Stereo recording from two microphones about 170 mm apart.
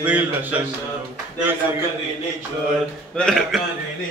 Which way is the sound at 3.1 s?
5° left (ahead or behind).